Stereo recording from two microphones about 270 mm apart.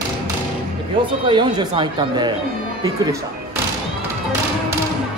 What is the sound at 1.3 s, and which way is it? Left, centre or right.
Speech, centre.